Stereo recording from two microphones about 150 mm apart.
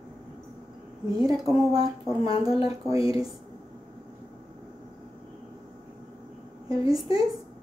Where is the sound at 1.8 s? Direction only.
25° right (ahead or behind).